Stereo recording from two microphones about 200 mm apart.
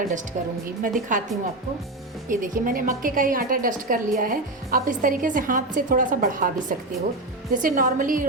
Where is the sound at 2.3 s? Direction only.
45° right (ahead or behind).